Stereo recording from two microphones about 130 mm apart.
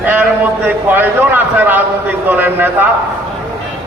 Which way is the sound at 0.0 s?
15° right (ahead or behind).